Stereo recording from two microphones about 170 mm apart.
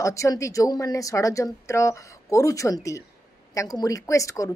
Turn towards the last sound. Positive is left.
turn(degrees=20)  # may be behind; listen again after turning